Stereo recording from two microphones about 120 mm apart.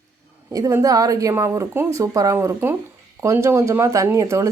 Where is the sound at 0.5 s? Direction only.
30° right (ahead or behind).